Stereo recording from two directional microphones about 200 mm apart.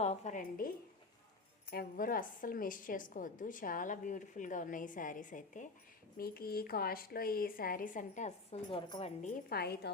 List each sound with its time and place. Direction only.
0.0 s a woman's voice: 35° left (ahead or behind)
1.7 s a woman's voice: 45° left (ahead or behind); by 9.3 s 30° left (ahead or behind)
9.5 s speech: 50° left (ahead or behind)